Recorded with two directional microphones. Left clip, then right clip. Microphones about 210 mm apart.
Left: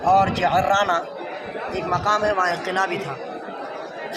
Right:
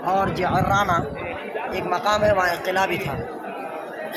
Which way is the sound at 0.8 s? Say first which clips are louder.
Even; 10° right (ahead or behind).